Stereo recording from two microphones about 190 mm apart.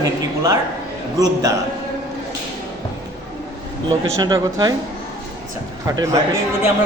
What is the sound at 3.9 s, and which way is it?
Speech, 20° right (ahead or behind).